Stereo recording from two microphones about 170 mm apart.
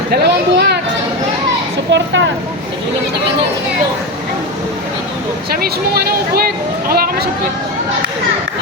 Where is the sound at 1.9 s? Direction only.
90° right.